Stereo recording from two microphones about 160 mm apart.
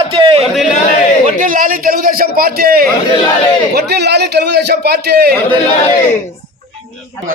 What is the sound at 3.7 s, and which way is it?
A man's voice, 90° right.